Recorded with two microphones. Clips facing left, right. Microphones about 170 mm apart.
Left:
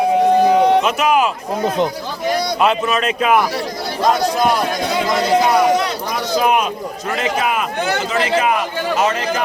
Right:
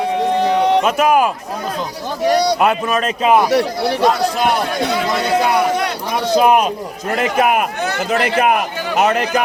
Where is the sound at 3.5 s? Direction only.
70° right (ahead or behind).